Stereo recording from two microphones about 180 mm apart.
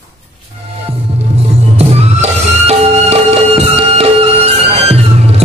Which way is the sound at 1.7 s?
35° right (ahead or behind).